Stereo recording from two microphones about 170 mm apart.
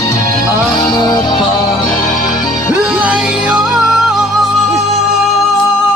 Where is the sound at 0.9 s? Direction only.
25° left (ahead or behind).